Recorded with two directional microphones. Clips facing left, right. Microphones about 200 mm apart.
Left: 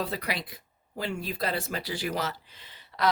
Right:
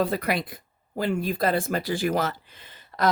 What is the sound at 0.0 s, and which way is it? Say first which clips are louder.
Speech: right 7 dB; 50° right (ahead or behind).